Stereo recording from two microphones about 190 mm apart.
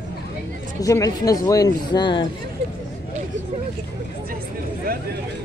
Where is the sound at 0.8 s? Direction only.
20° left (ahead or behind).